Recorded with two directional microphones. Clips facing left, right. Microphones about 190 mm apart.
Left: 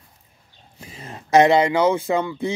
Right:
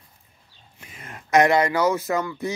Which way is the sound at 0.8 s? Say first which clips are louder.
Left 5 dB; 30° left (ahead or behind).